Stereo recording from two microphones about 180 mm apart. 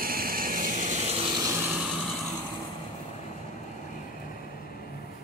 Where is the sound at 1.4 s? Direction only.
15° right (ahead or behind).